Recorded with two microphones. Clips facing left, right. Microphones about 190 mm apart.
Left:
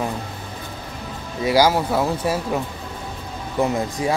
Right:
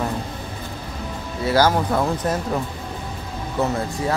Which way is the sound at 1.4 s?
10° left (ahead or behind).